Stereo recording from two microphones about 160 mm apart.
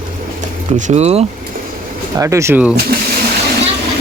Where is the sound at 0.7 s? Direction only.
50° right (ahead or behind).